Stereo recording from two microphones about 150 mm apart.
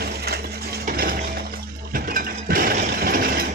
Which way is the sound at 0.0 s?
90° right.